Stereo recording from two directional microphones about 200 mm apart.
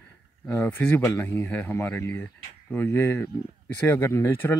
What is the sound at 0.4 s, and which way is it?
Speech, 10° left (ahead or behind).